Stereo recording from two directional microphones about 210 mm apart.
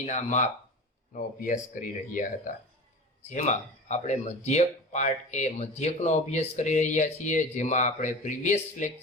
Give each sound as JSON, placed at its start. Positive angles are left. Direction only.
{"t": 0.0, "sound": "speech", "side_deg": 35}